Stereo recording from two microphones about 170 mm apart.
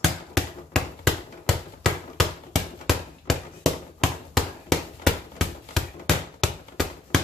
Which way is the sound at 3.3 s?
Centre (ahead or behind).